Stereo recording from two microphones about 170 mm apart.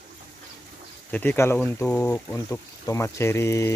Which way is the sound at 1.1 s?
10° left (ahead or behind).